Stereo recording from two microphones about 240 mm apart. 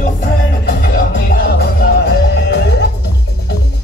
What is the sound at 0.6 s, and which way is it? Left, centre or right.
Music, left.